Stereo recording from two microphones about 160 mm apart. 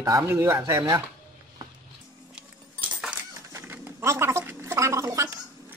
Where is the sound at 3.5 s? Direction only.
15° right (ahead or behind).